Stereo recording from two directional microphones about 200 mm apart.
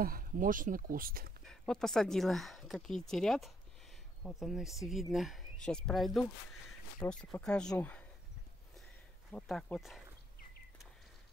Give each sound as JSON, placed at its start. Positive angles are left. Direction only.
{"t": 0.0, "sound": "speech", "side_deg": -45}
{"t": 1.4, "sound": "speech", "side_deg": 0}
{"t": 9.3, "sound": "speech", "side_deg": 5}